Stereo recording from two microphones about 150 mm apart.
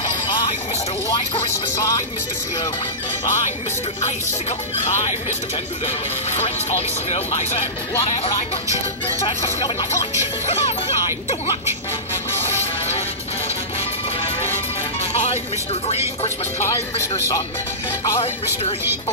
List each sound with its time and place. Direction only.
0.0 s music: 30° left (ahead or behind)
1.5 s speech: 20° left (ahead or behind)
4.5 s speech: 45° left (ahead or behind)
10.4 s speech: 45° left (ahead or behind)
12.5 s music: 45° left (ahead or behind)
15.1 s speech: 45° left (ahead or behind)
16.6 s speech: 20° left (ahead or behind)